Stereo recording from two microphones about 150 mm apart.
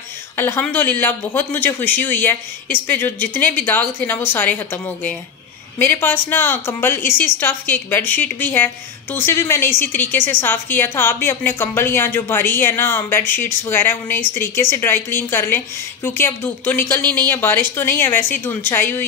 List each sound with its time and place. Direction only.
0.4 s speech: 15° left (ahead or behind)